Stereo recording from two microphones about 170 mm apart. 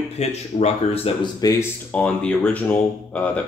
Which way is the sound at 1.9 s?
5° left (ahead or behind).